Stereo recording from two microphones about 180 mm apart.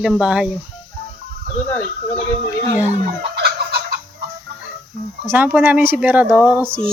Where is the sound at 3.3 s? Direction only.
65° right (ahead or behind).